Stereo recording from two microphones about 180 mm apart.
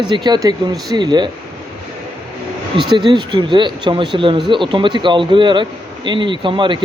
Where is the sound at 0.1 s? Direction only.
25° right (ahead or behind).